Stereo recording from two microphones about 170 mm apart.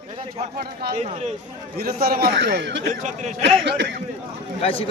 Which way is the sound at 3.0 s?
45° right (ahead or behind).